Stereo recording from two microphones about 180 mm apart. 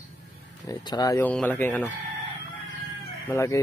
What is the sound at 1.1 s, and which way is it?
Speech, 10° left (ahead or behind).